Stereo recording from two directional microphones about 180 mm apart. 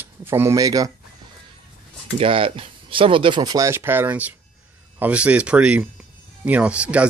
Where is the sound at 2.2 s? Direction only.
30° right (ahead or behind).